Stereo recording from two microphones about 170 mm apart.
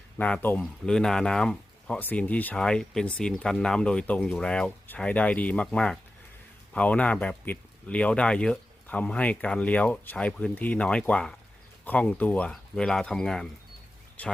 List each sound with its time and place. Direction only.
0.2 s speech: 10° left (ahead or behind)